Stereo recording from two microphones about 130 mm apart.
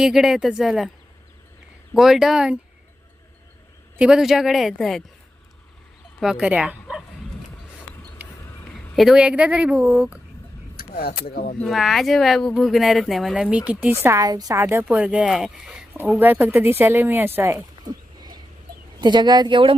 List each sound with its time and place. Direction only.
0.0 s speech: 5° right (ahead or behind)
1.9 s speech: centre (ahead or behind)
3.9 s speech: 5° right (ahead or behind)
6.3 s speech: 10° right (ahead or behind)
8.6 s speech: centre (ahead or behind)
11.6 s a woman's voice: centre (ahead or behind)
16.1 s a woman's voice: 15° right (ahead or behind)
18.2 s a sound: 35° right (ahead or behind)
18.9 s speech: 35° right (ahead or behind)